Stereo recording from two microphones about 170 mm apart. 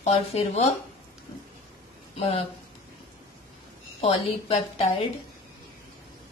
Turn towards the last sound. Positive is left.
turn(degrees=35)  # may be behind; listen again after turning